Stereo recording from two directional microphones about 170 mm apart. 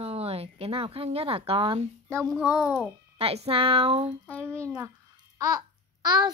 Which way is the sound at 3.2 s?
35° right (ahead or behind).